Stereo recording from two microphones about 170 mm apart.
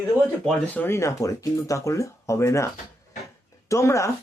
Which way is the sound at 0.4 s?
10° left (ahead or behind).